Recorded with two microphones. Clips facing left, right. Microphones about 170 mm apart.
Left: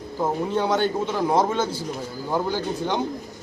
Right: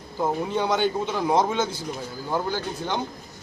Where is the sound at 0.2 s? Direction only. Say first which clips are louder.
Left 1 dB; 5° left (ahead or behind).